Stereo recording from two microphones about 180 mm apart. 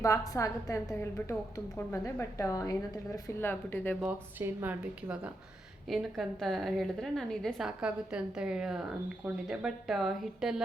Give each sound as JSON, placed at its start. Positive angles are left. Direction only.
{"t": 0.0, "sound": "a woman's voice", "side_deg": 15}
{"t": 4.0, "sound": "a woman's voice", "side_deg": -10}